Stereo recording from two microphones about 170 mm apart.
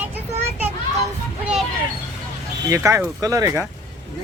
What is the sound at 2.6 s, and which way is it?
Speech, 15° right (ahead or behind).